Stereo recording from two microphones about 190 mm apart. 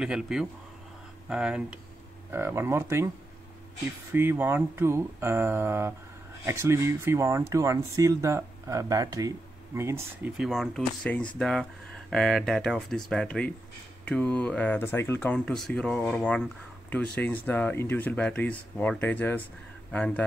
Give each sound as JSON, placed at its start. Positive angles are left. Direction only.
{"t": 0.0, "sound": "speech", "side_deg": -5}
{"t": 4.1, "sound": "speech", "side_deg": -10}
{"t": 10.3, "sound": "speech", "side_deg": 0}